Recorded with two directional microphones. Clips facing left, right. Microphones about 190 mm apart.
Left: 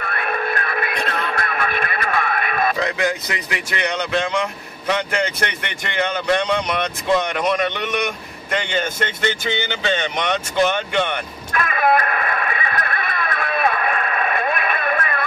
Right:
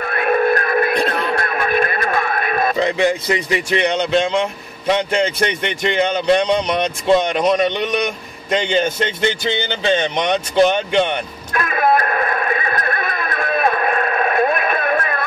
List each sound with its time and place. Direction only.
0.0 s radio: 40° right (ahead or behind)
1.4 s music: 40° right (ahead or behind)
2.8 s speech: 30° right (ahead or behind)
12.1 s neigh: 40° right (ahead or behind)